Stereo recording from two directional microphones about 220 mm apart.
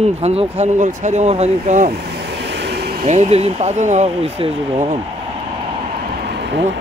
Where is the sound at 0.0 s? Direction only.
30° right (ahead or behind).